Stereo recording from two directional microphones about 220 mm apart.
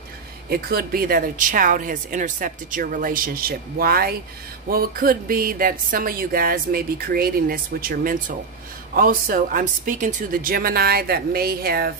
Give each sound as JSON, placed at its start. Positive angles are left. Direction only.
{"t": 0.5, "sound": "speech", "side_deg": -45}